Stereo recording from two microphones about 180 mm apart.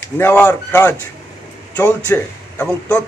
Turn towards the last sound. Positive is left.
turn(degrees=10)  # may be behind; listen again after turning